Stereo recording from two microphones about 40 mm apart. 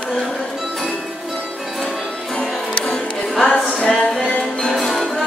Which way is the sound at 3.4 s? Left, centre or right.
Centre.